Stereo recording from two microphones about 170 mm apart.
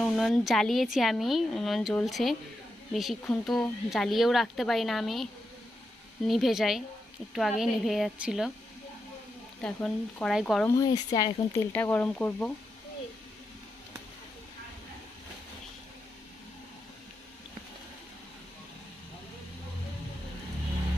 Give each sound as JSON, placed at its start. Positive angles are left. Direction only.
{"t": 0.0, "sound": "speech", "side_deg": 0}
{"t": 9.6, "sound": "speech", "side_deg": 5}
{"t": 10.7, "sound": "speech", "side_deg": 25}
{"t": 11.5, "sound": "speech", "side_deg": 15}